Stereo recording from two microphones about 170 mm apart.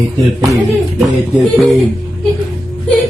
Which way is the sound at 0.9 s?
Centre (ahead or behind).